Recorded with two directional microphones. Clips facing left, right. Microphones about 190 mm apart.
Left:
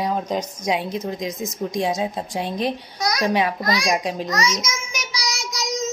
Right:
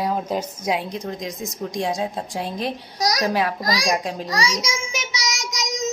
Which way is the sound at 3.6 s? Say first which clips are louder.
Left 1 dB; 35° right (ahead or behind).